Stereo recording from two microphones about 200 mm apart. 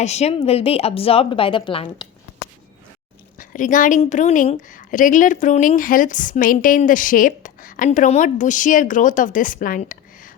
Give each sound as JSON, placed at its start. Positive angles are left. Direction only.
{"t": 0.0, "sound": "a woman's voice", "side_deg": 35}
{"t": 3.3, "sound": "a woman's voice", "side_deg": 40}